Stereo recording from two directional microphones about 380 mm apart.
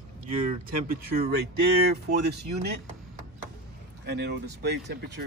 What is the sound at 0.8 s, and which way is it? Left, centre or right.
Speech, right.